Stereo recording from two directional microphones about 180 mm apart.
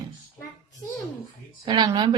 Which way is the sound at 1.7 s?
25° right (ahead or behind).